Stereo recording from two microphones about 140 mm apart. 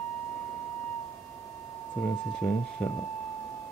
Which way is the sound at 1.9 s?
15° left (ahead or behind).